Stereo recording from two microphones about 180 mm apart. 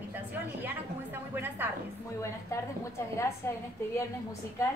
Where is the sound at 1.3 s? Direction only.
10° right (ahead or behind).